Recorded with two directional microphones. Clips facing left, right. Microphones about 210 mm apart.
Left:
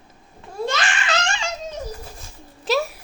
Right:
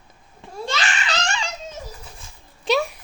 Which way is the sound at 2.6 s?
Centre (ahead or behind).